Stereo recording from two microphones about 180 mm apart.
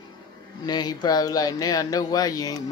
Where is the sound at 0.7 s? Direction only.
20° left (ahead or behind).